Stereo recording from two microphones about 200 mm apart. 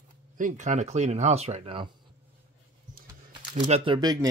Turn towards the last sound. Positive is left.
turn(degrees=-20)  # may be behind; listen again after turning